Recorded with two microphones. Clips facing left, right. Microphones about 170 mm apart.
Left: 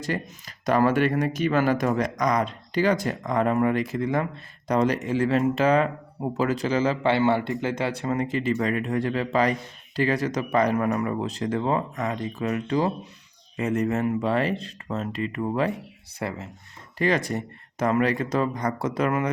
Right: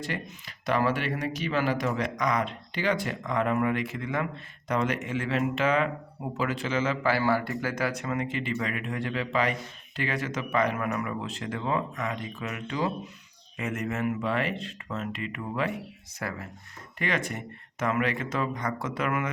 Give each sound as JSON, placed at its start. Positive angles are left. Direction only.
{"t": 0.0, "sound": "speech", "side_deg": 40}
{"t": 16.2, "sound": "speech", "side_deg": 25}
{"t": 17.0, "sound": "speech", "side_deg": 35}